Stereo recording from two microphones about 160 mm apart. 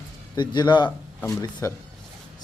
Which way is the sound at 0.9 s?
15° left (ahead or behind).